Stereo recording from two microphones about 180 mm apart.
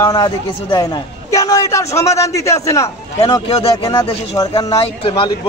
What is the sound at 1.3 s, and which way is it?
A man's voice, 20° left (ahead or behind).